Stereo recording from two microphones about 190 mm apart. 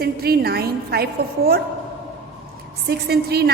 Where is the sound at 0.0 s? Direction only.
55° right (ahead or behind).